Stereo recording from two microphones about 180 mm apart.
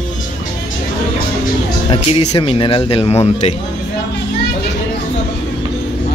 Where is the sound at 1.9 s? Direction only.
30° left (ahead or behind).